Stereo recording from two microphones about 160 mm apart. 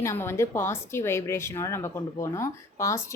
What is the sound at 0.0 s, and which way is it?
Speech, 15° left (ahead or behind).